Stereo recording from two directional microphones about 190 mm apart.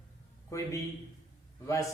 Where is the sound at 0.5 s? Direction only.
15° left (ahead or behind).